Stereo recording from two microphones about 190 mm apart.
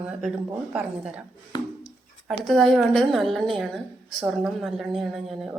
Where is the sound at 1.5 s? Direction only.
20° left (ahead or behind).